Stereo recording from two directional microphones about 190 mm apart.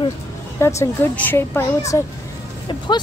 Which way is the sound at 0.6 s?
15° left (ahead or behind).